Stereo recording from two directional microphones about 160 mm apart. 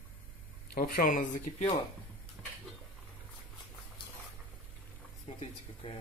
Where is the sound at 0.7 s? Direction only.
70° left (ahead or behind).